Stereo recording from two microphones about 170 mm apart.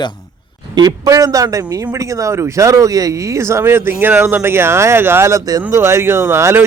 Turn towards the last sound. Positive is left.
turn(degrees=-15)  # may be behind; listen again after turning